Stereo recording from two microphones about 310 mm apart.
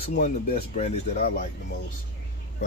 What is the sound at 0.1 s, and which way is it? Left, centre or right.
Speech, left.